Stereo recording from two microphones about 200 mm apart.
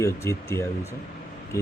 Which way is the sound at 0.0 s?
15° left (ahead or behind).